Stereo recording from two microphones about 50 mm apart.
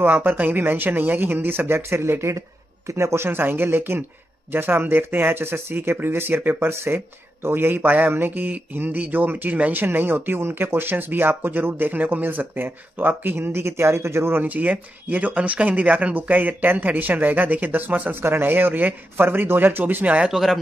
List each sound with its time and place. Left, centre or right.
0.0 s speech: right
14.4 s speech: right
20.2 s speech: centre